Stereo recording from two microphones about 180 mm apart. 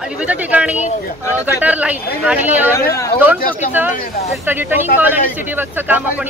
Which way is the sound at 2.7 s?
15° left (ahead or behind).